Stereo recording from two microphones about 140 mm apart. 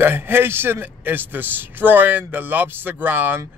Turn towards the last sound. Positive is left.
turn(degrees=-15)  # may be behind; listen again after turning